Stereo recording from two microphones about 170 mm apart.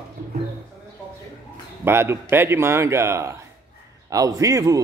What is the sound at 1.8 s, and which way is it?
A man's voice, 15° right (ahead or behind).